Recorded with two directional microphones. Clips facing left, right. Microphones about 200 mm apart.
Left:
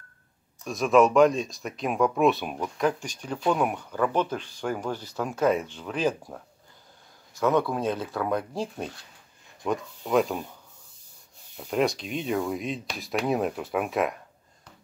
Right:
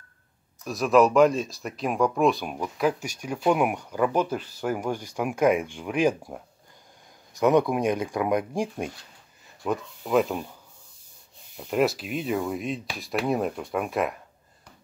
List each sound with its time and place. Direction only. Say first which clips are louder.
0.7 s speech: even; centre (ahead or behind)
9.7 s speech: right 1 dB; centre (ahead or behind)
11.5 s speech: right 2 dB; centre (ahead or behind)